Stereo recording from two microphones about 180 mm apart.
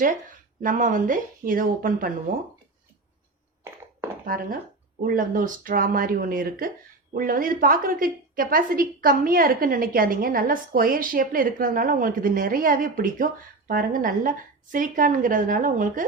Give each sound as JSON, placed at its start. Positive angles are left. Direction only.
{"t": 0.0, "sound": "a woman's voice", "side_deg": -50}
{"t": 3.6, "sound": "a sound", "side_deg": -15}
{"t": 4.3, "sound": "a woman's voice", "side_deg": -50}